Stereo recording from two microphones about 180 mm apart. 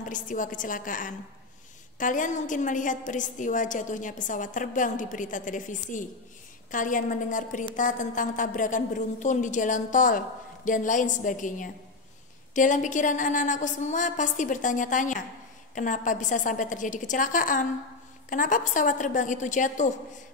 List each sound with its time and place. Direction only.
0.0 s a woman's voice: 45° left (ahead or behind)